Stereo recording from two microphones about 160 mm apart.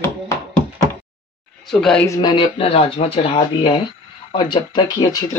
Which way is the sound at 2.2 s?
30° left (ahead or behind).